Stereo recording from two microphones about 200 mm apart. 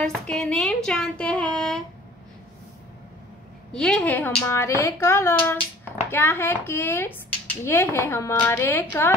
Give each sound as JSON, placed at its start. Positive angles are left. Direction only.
{"t": 0.0, "sound": "a woman's voice", "side_deg": 5}
{"t": 0.8, "sound": "a sound", "side_deg": 5}
{"t": 3.7, "sound": "a woman's voice", "side_deg": 5}